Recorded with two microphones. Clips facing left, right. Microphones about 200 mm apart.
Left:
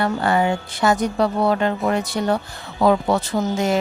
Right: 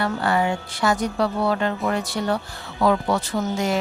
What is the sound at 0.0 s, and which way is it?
A woman's voice, 25° left (ahead or behind).